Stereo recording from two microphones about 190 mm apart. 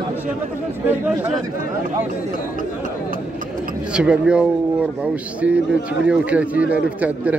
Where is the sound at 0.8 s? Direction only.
5° right (ahead or behind).